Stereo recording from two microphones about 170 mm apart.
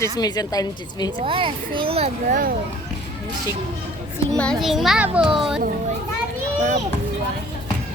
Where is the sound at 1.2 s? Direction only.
30° right (ahead or behind).